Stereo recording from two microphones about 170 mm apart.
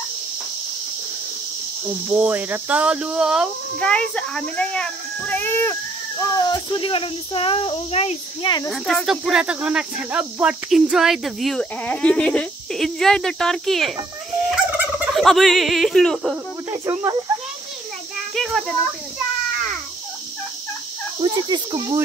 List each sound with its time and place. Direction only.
2.0 s speech: 10° right (ahead or behind); by 8.6 s 25° left (ahead or behind)
8.6 s speech: centre (ahead or behind)
15.1 s speech: centre (ahead or behind)
16.7 s speech: 20° right (ahead or behind)
18.3 s a sound: centre (ahead or behind)
21.2 s cricket: 25° right (ahead or behind)